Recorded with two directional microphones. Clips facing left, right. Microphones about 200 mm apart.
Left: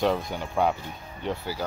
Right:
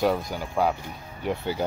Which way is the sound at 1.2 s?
20° right (ahead or behind).